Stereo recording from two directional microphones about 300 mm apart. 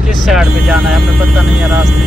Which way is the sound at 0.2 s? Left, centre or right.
Centre.